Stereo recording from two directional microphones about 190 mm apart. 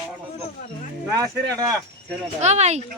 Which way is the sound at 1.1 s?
20° right (ahead or behind).